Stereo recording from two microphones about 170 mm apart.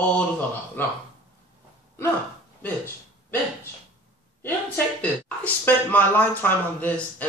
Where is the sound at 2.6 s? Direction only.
10° left (ahead or behind).